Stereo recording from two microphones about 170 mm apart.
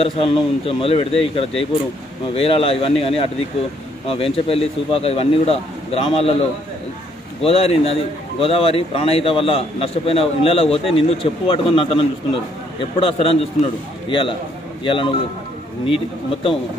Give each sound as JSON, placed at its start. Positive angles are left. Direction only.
{"t": 0.0, "sound": "a man's voice", "side_deg": 35}
{"t": 7.4, "sound": "a man's voice", "side_deg": 35}